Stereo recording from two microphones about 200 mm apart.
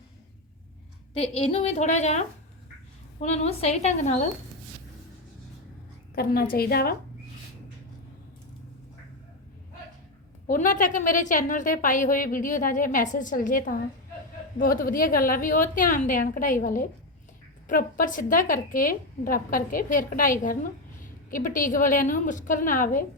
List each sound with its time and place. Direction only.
1.1 s a woman's voice: 30° left (ahead or behind)
6.1 s a woman's voice: 50° left (ahead or behind)
10.4 s a woman's voice: 40° left (ahead or behind)